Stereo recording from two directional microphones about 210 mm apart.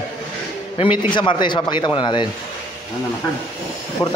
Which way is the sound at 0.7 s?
25° left (ahead or behind).